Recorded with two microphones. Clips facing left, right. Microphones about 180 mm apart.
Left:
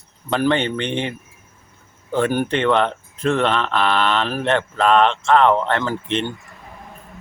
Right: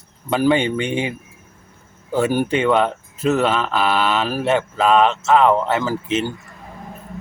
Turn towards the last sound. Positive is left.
turn(degrees=-5)  # may be behind; listen again after turning